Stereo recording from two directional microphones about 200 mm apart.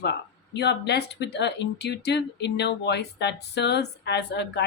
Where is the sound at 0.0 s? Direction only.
55° left (ahead or behind).